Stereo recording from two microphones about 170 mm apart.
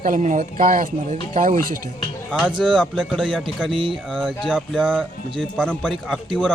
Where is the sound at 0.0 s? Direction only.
50° right (ahead or behind).